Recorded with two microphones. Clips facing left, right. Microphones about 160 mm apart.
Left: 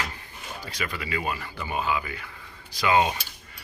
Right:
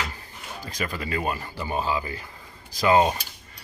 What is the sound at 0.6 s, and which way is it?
Speech, 40° right (ahead or behind).